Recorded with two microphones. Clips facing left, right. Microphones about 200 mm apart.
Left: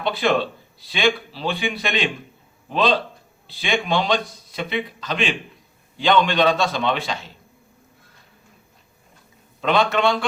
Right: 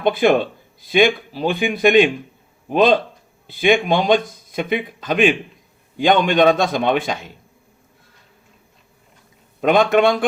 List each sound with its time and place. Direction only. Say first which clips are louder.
0.0 s speech: right 5 dB; 50° right (ahead or behind)
3.4 s speech: right 8 dB; 50° right (ahead or behind)
9.6 s speech: right 5 dB; 50° right (ahead or behind)